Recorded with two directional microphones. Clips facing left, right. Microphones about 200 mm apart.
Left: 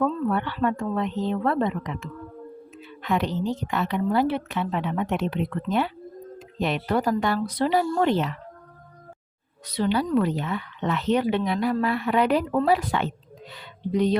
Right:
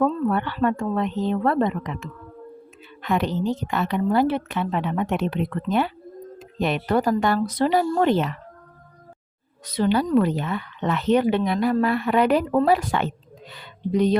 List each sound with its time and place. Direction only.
0.0 s a woman's voice: 45° right (ahead or behind)
9.7 s a woman's voice: 45° right (ahead or behind)